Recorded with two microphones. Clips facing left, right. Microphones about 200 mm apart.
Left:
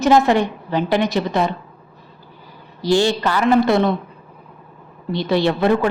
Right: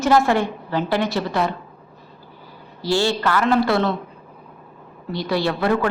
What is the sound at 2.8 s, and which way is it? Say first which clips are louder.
A woman's voice: left 3 dB; 15° left (ahead or behind).